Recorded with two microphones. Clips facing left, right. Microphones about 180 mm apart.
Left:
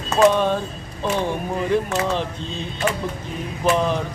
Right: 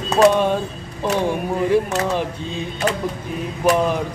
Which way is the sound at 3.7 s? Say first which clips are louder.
Right 2 dB; 10° right (ahead or behind).